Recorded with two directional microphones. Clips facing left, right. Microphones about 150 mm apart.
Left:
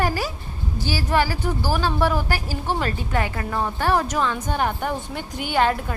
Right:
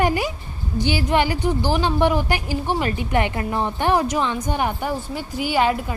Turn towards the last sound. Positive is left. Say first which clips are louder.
# right 1 dB
turn(degrees=-5)  # may be behind; listen again after turning